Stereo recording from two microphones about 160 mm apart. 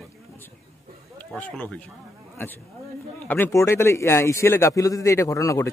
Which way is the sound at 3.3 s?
15° left (ahead or behind).